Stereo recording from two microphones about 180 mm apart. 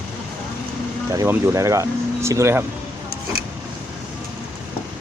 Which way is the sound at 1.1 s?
15° right (ahead or behind).